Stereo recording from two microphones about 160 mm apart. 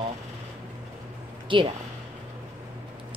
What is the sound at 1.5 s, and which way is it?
Speech, 30° right (ahead or behind).